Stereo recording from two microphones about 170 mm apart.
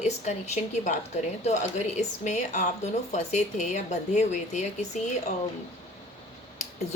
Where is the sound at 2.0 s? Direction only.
45° left (ahead or behind).